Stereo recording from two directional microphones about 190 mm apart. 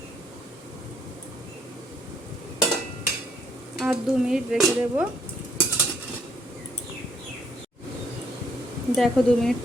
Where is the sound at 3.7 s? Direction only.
5° right (ahead or behind).